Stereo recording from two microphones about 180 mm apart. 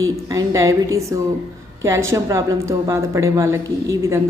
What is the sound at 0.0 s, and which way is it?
Speech, 15° right (ahead or behind).